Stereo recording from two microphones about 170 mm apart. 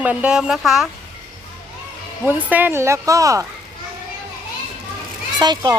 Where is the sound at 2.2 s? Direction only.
10° right (ahead or behind).